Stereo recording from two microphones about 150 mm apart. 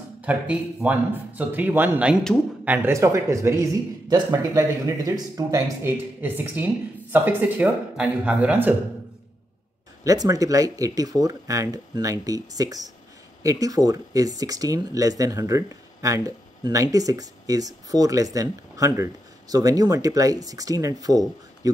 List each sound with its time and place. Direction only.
0.2 s speech: 10° right (ahead or behind)
10.0 s speech: 25° right (ahead or behind)